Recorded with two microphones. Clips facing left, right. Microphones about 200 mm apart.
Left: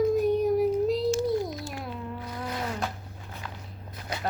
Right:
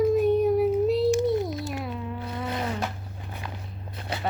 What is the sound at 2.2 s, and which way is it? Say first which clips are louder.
Insect: right 4 dB; 25° right (ahead or behind).